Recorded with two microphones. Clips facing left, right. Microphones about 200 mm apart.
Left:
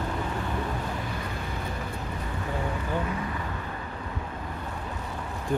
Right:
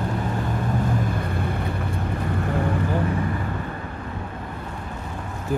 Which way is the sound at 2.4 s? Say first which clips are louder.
Right 6 dB; 55° right (ahead or behind).